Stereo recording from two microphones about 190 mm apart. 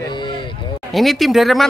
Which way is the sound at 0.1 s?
25° left (ahead or behind).